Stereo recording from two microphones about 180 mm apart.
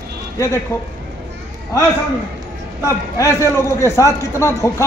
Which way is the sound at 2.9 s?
15° left (ahead or behind).